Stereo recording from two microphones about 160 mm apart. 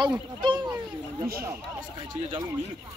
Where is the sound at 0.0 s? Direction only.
30° right (ahead or behind).